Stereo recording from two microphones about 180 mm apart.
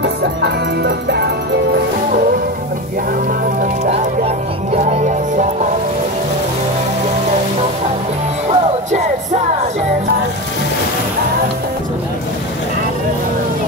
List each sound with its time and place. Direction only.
0.0 s music: 70° right (ahead or behind)
4.7 s music: 40° right (ahead or behind)
8.5 s music: 40° right (ahead or behind)